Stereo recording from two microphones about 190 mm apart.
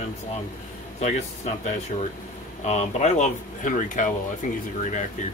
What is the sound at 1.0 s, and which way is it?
Speech, 35° left (ahead or behind).